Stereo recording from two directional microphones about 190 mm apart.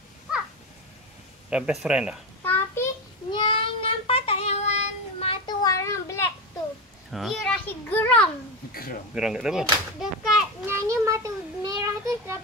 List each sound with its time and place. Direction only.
1.5 s a child's voice: 5° right (ahead or behind)
2.4 s a sound: 10° left (ahead or behind)
3.3 s child singing: 25° left (ahead or behind)
7.1 s a child's voice: centre (ahead or behind)
9.1 s a child's voice: 5° right (ahead or behind)
10.9 s a child's voice: 15° right (ahead or behind)